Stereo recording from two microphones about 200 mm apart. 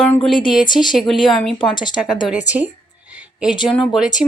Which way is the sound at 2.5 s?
5° right (ahead or behind).